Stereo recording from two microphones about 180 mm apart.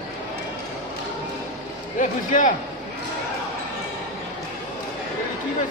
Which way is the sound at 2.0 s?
45° left (ahead or behind).